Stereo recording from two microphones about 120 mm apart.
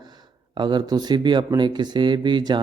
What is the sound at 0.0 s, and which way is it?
Speech, 35° right (ahead or behind).